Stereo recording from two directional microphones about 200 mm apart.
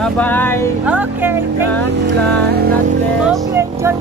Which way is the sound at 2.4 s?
50° right (ahead or behind).